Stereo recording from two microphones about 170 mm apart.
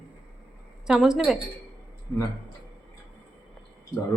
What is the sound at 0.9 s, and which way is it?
Speech, centre (ahead or behind).